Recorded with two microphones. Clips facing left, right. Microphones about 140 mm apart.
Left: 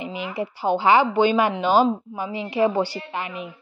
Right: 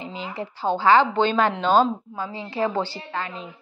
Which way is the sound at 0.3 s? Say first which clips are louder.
Left 2 dB; 10° left (ahead or behind).